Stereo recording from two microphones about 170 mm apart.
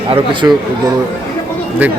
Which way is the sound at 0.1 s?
30° right (ahead or behind).